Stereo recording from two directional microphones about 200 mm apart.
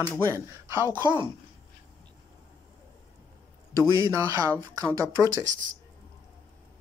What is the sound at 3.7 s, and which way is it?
Speech, 15° right (ahead or behind).